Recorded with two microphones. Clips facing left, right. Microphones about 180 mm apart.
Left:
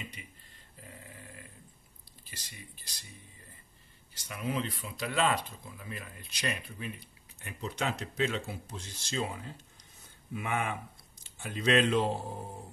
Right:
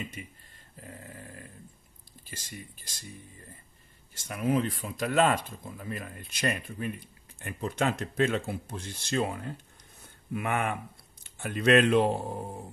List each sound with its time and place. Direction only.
0.2 s speech: 50° right (ahead or behind)
0.7 s dog: 45° right (ahead or behind)
2.2 s speech: 45° right (ahead or behind)
4.1 s speech: 45° right (ahead or behind)